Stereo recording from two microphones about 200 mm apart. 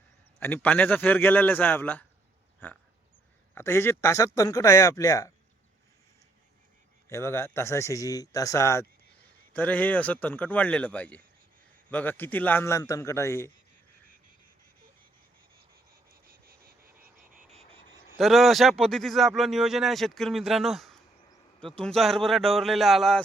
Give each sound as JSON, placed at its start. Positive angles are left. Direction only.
{"t": 0.3, "sound": "a man's voice", "side_deg": 10}
{"t": 7.1, "sound": "a man's voice", "side_deg": 10}
{"t": 16.3, "sound": "frog", "side_deg": -45}
{"t": 18.2, "sound": "speech", "side_deg": 0}